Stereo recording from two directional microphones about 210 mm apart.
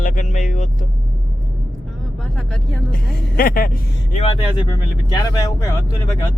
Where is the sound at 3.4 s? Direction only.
45° left (ahead or behind).